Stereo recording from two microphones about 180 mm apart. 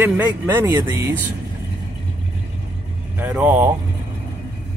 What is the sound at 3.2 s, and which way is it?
Speech, 5° right (ahead or behind).